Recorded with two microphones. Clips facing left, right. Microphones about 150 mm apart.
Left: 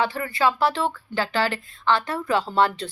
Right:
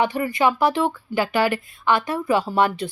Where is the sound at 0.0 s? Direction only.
15° right (ahead or behind).